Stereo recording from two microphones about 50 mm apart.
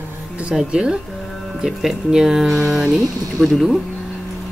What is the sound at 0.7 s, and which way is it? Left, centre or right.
Speech, centre.